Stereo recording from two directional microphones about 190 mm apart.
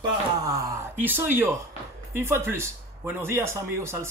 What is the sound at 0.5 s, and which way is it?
Speech, 10° right (ahead or behind).